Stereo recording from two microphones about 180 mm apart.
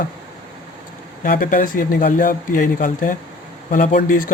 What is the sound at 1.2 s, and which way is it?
Speech, 50° left (ahead or behind).